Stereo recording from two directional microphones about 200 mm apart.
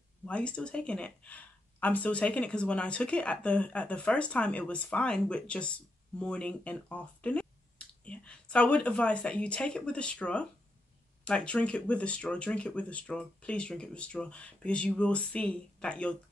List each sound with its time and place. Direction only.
0.2 s speech: 5° left (ahead or behind)